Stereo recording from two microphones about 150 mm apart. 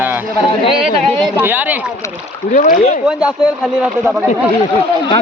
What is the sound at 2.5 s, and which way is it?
Speech, 55° left (ahead or behind).